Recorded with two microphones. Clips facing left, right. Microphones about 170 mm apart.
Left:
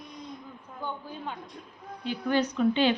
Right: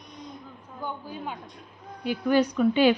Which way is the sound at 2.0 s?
10° right (ahead or behind).